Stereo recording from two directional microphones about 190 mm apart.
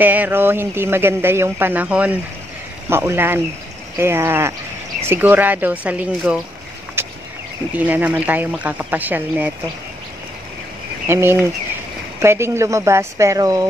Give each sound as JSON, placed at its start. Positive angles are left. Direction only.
{"t": 0.0, "sound": "speech", "side_deg": -10}
{"t": 7.0, "sound": "a sound", "side_deg": -10}
{"t": 7.7, "sound": "speech", "side_deg": -10}
{"t": 11.1, "sound": "speech", "side_deg": -10}